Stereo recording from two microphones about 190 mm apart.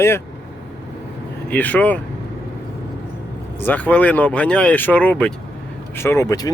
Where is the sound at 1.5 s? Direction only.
5° left (ahead or behind).